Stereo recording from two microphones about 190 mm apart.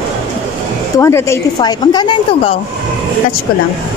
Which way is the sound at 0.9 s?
15° left (ahead or behind).